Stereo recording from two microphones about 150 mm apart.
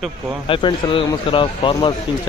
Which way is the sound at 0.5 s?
35° left (ahead or behind).